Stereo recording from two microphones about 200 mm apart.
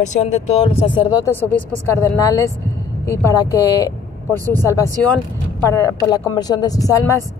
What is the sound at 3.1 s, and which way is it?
Speech, 15° left (ahead or behind).